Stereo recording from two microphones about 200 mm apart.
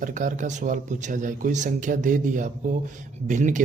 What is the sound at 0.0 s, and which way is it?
Speech, 40° right (ahead or behind).